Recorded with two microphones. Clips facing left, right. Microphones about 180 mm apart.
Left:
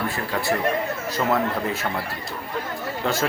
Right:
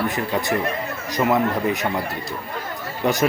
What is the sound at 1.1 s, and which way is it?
Speech, 15° right (ahead or behind).